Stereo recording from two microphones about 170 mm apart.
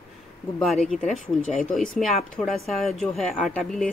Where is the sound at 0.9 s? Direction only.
Centre (ahead or behind).